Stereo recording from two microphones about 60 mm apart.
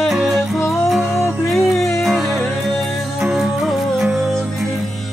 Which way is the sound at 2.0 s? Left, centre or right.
Centre.